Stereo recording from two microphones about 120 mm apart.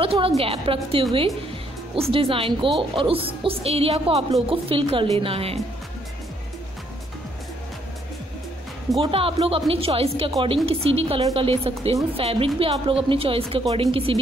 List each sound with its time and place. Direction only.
0.0 s a woman's voice: 50° right (ahead or behind)
9.0 s speech: 50° right (ahead or behind)